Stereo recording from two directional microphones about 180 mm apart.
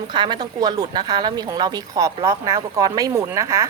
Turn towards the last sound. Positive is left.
turn(degrees=-15)  # may be behind; listen again after turning